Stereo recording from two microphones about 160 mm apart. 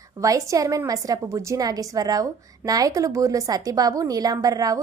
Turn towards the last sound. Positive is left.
turn(degrees=-20)  # may be behind; listen again after turning